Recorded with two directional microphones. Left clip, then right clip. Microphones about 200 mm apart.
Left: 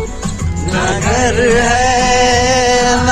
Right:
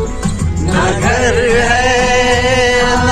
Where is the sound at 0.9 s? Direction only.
20° left (ahead or behind).